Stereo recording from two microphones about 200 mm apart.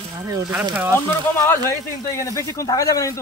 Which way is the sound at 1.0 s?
10° left (ahead or behind).